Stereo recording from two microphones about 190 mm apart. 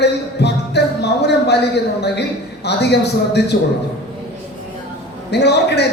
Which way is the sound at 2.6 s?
60° left (ahead or behind).